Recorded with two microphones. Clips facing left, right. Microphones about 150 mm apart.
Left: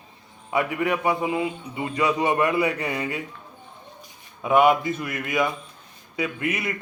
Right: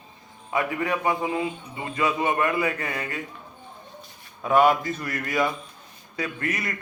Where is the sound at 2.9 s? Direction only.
15° left (ahead or behind).